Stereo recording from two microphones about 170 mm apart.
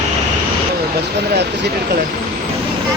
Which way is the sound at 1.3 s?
80° right.